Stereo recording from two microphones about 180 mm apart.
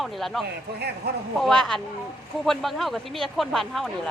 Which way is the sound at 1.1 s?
60° right (ahead or behind).